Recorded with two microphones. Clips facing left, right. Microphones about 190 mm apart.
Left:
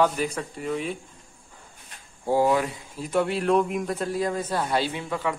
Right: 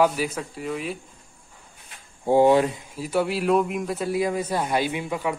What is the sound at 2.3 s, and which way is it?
Speech, 25° right (ahead or behind).